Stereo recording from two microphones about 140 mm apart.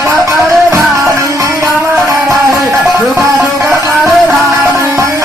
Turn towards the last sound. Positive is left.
turn(degrees=0)  # may be behind; listen again after turning